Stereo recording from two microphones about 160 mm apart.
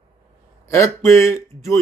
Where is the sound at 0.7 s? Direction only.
20° left (ahead or behind).